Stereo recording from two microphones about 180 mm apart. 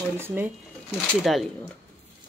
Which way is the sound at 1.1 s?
5° left (ahead or behind).